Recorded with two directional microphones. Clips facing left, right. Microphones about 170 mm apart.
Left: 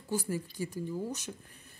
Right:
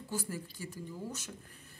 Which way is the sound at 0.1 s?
15° left (ahead or behind).